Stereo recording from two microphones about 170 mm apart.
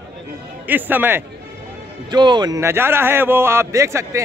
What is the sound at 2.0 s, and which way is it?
A man's voice, 25° right (ahead or behind).